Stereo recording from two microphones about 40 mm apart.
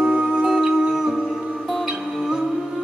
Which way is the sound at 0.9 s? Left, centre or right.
Centre.